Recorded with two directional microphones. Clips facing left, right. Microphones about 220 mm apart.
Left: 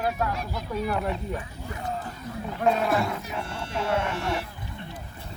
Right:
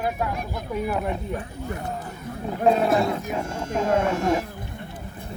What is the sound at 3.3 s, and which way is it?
Speech, 45° right (ahead or behind).